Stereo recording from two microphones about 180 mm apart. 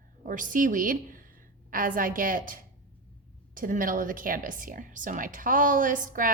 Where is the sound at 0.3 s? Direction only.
50° right (ahead or behind).